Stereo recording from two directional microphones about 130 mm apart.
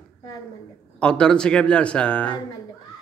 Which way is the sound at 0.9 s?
5° left (ahead or behind).